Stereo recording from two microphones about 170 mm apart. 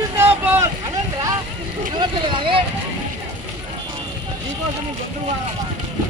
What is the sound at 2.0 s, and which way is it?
Speech, 30° right (ahead or behind).